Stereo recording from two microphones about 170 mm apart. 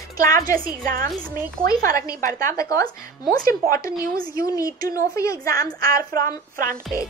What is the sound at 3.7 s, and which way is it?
Speech, 55° right (ahead or behind).